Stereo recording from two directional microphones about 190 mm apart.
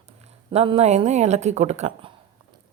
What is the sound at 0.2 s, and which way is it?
A woman's voice, 35° right (ahead or behind).